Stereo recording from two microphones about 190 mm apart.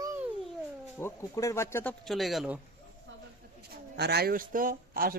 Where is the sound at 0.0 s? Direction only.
15° right (ahead or behind).